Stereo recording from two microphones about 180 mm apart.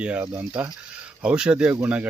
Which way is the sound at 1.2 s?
5° right (ahead or behind).